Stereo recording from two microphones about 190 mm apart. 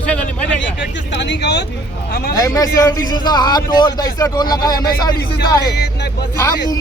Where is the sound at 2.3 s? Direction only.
15° left (ahead or behind).